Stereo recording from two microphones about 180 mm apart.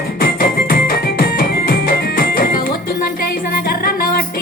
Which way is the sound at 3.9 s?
55° left (ahead or behind).